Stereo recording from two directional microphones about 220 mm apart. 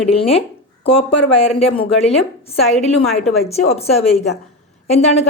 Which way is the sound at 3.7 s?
30° left (ahead or behind).